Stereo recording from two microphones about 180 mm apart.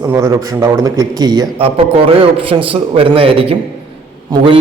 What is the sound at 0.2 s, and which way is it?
A man's voice, 20° right (ahead or behind).